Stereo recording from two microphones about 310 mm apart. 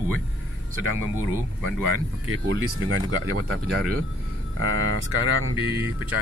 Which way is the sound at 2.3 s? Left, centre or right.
Right.